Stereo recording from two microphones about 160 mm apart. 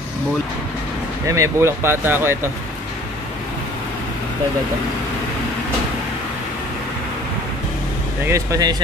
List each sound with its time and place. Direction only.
1.2 s speech: 20° right (ahead or behind)
8.3 s speech: 20° right (ahead or behind)